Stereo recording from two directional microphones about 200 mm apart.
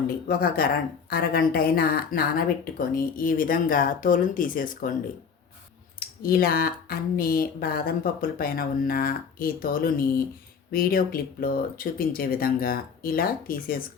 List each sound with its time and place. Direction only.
0.3 s speech: 50° left (ahead or behind)
6.2 s speech: 50° left (ahead or behind)